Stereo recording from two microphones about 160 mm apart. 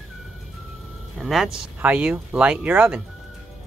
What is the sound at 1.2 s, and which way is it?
Speech, centre (ahead or behind).